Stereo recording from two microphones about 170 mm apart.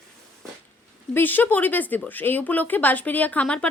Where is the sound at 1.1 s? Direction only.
10° left (ahead or behind).